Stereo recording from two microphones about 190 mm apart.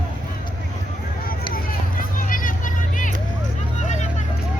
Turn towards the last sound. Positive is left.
turn(degrees=40)  # may be behind; listen again after turning